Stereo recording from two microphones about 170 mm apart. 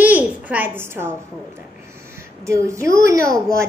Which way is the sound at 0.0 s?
10° right (ahead or behind).